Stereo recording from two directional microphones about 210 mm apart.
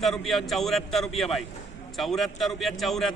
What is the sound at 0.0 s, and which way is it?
Speech, centre (ahead or behind).